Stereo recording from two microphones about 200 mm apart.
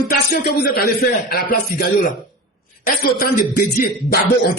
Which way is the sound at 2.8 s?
50° left (ahead or behind).